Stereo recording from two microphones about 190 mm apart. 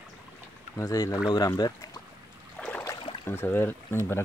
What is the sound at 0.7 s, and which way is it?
Speech, 20° left (ahead or behind).